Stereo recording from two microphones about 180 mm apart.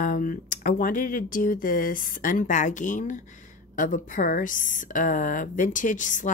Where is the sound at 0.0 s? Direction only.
50° left (ahead or behind).